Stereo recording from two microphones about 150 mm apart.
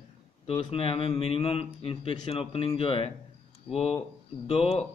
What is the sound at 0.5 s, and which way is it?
Speech, 35° left (ahead or behind).